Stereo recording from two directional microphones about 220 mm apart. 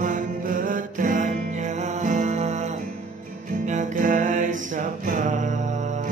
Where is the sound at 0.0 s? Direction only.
40° right (ahead or behind).